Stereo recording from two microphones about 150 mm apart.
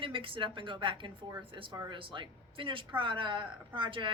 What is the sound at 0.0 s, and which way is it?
A woman's voice, 35° right (ahead or behind).